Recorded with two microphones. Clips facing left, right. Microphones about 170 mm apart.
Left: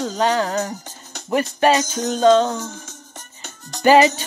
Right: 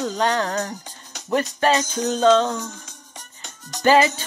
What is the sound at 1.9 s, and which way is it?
Music, 5° left (ahead or behind).